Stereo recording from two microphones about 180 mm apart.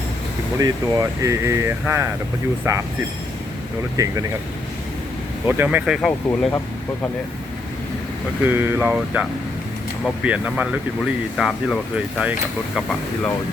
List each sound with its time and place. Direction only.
0.6 s speech: 20° right (ahead or behind)
3.9 s speech: 20° right (ahead or behind)
5.5 s speech: 10° right (ahead or behind)
8.4 s speech: 10° right (ahead or behind)
10.2 s speech: 5° right (ahead or behind)